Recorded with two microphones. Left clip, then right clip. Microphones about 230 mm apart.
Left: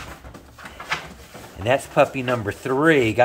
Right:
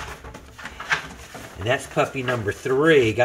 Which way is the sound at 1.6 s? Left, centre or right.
Left.